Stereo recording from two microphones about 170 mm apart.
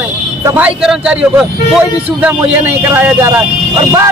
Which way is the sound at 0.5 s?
5° right (ahead or behind).